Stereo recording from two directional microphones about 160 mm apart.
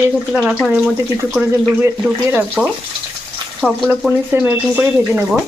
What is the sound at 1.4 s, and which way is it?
Speech, 15° right (ahead or behind).